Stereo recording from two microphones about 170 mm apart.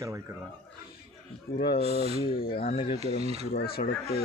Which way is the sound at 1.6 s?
70° left (ahead or behind).